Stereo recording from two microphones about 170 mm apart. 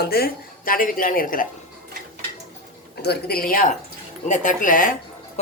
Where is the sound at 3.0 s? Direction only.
70° left (ahead or behind).